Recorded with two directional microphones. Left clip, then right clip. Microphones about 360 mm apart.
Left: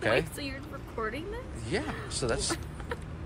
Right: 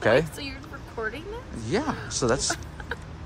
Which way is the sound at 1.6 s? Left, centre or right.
Centre.